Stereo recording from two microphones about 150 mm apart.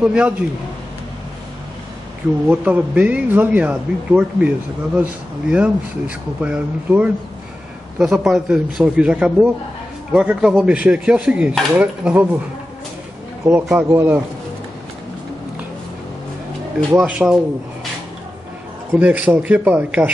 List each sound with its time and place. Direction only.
0.0 s speech: 5° right (ahead or behind)
2.4 s a man's voice: 15° right (ahead or behind)
13.5 s speech: 10° right (ahead or behind)
16.9 s speech: 10° right (ahead or behind)
18.9 s speech: 10° right (ahead or behind)